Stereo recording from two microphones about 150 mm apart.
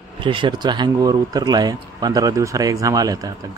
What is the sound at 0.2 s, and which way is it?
A man's voice, 35° right (ahead or behind).